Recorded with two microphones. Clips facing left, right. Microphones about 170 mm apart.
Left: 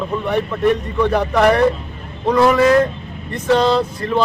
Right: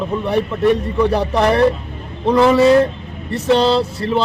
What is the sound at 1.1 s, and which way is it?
Speech, 30° right (ahead or behind).